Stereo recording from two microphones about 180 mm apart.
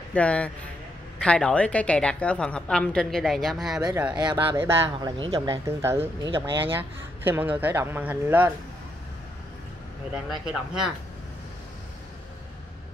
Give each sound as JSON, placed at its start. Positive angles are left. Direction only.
{"t": 0.1, "sound": "a woman's voice", "side_deg": 5}
{"t": 4.1, "sound": "speech", "side_deg": -25}
{"t": 4.4, "sound": "speech", "side_deg": -15}
{"t": 5.7, "sound": "speech", "side_deg": -15}
{"t": 10.3, "sound": "a woman's voice", "side_deg": -5}